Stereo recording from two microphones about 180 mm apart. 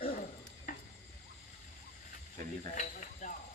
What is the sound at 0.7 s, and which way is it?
Cricket, 45° left (ahead or behind).